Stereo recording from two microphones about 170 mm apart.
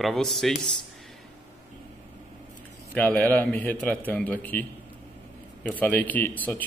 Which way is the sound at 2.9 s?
10° left (ahead or behind).